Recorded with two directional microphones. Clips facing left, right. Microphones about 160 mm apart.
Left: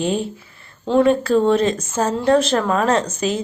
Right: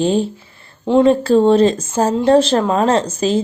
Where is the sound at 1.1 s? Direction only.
30° right (ahead or behind).